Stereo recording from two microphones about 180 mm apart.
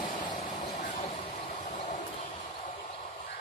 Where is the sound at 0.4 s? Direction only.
40° left (ahead or behind).